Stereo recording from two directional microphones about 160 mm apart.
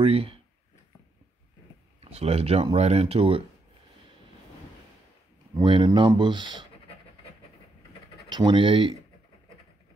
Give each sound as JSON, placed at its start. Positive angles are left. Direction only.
{"t": 0.0, "sound": "speech", "side_deg": -35}
{"t": 2.0, "sound": "speech", "side_deg": -40}
{"t": 5.6, "sound": "speech", "side_deg": -30}
{"t": 8.3, "sound": "speech", "side_deg": -30}